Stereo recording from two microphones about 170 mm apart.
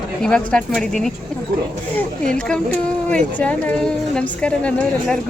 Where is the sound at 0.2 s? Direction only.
5° left (ahead or behind).